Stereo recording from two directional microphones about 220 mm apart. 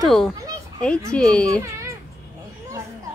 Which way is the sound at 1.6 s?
15° right (ahead or behind).